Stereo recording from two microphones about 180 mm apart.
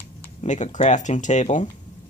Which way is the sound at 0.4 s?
40° left (ahead or behind).